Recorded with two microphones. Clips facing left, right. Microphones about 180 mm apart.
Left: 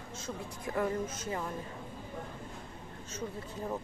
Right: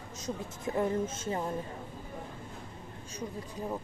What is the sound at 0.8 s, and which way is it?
Speech, 25° right (ahead or behind).